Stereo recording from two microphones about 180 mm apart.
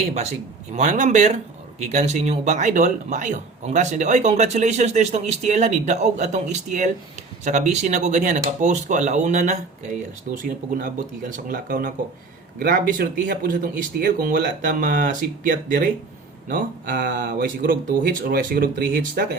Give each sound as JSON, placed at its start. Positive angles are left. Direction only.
{"t": 0.1, "sound": "speech", "side_deg": -35}